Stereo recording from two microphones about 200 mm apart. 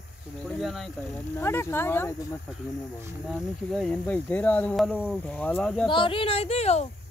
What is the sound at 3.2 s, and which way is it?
Speech, centre (ahead or behind).